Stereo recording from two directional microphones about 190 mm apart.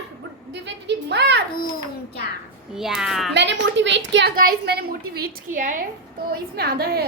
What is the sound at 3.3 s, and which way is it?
Speech, 70° right (ahead or behind).